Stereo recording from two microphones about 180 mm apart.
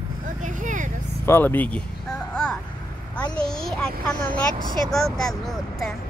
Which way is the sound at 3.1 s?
5° left (ahead or behind).